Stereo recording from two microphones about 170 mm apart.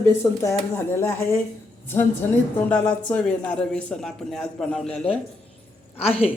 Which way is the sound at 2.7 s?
5° left (ahead or behind).